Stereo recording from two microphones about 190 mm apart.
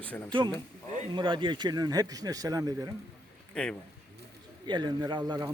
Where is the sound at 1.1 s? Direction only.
25° right (ahead or behind).